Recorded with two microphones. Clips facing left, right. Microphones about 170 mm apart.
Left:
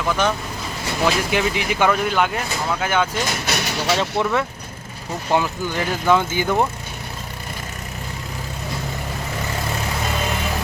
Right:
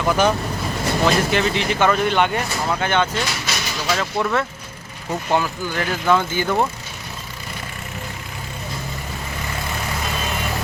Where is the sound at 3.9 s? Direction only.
25° left (ahead or behind).